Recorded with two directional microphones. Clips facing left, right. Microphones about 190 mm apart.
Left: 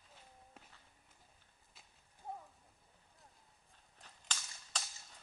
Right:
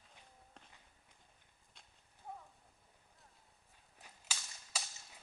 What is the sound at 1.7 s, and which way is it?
Clip-clop, 5° left (ahead or behind).